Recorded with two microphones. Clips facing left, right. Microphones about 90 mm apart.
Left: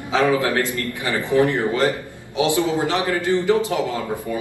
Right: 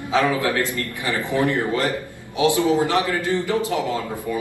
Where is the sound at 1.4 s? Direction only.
20° left (ahead or behind).